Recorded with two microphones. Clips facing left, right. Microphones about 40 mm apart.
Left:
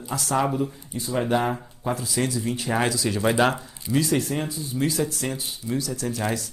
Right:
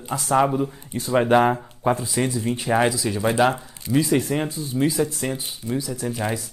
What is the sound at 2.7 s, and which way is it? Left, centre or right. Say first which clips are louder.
Speech: right 3 dB; centre.